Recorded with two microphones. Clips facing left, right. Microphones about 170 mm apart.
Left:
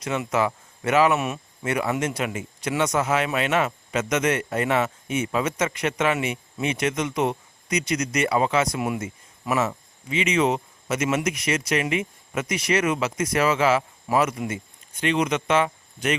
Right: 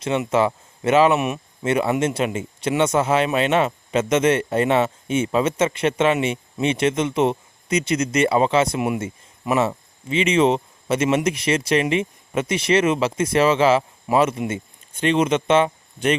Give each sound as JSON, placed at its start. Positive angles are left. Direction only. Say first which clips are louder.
{"t": 0.0, "sound": "speech", "louder": "right 4 dB", "side_deg": -25}